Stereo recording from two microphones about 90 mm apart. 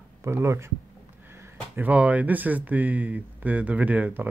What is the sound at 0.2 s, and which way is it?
Speech, 30° right (ahead or behind).